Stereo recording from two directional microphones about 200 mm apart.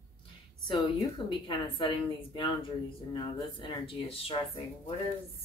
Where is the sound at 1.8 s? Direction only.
25° left (ahead or behind).